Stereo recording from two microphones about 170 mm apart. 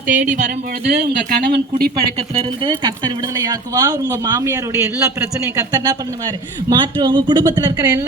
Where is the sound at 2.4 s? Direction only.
30° right (ahead or behind).